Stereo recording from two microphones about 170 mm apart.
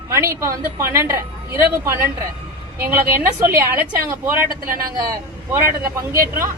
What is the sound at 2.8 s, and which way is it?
A woman's voice, 15° right (ahead or behind).